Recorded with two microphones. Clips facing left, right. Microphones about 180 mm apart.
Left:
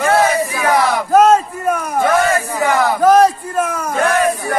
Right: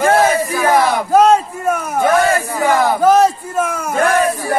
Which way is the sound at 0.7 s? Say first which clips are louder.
Right 1 dB; 25° right (ahead or behind).